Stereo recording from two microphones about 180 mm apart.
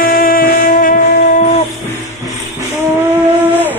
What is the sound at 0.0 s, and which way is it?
Music, 55° left (ahead or behind).